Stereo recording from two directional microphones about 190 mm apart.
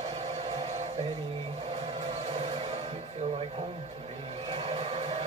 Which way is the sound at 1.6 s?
35° right (ahead or behind).